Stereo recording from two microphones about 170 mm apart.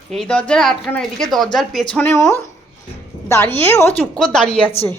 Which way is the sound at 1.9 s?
15° left (ahead or behind).